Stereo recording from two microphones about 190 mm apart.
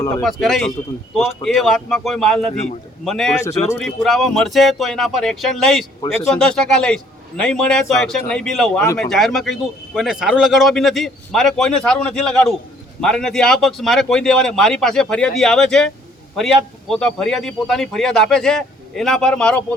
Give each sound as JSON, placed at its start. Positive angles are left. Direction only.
{"t": 0.2, "sound": "speech", "side_deg": 0}
{"t": 16.9, "sound": "speech", "side_deg": 5}